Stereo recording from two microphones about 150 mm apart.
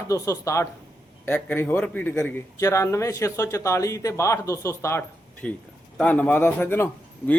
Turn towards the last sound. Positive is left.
turn(degrees=15)  # may be behind; listen again after turning